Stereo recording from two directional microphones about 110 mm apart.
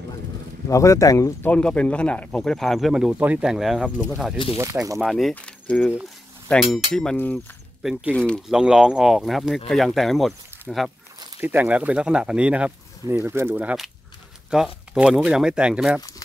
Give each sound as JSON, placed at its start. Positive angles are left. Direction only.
{"t": 0.7, "sound": "speech", "side_deg": 30}
{"t": 1.4, "sound": "speech", "side_deg": 10}
{"t": 3.8, "sound": "speech", "side_deg": -10}
{"t": 4.9, "sound": "speech", "side_deg": 0}
{"t": 5.3, "sound": "speech", "side_deg": 10}
{"t": 5.8, "sound": "speech", "side_deg": -5}
{"t": 8.1, "sound": "speech", "side_deg": 10}
{"t": 8.5, "sound": "speech", "side_deg": -5}
{"t": 11.4, "sound": "speech", "side_deg": -15}
{"t": 13.1, "sound": "speech", "side_deg": -25}